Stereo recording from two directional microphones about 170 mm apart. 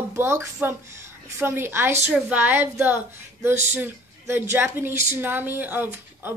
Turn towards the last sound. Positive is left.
turn(degrees=-10)  # may be behind; listen again after turning